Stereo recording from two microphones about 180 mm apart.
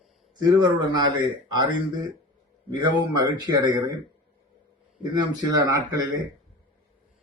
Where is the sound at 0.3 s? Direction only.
25° right (ahead or behind).